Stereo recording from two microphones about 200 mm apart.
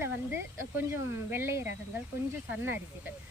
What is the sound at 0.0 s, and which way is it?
Speech, 10° right (ahead or behind).